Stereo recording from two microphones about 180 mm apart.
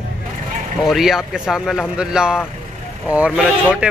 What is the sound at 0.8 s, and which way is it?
Speech, centre (ahead or behind).